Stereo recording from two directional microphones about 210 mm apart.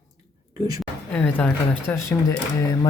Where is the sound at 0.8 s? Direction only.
5° left (ahead or behind).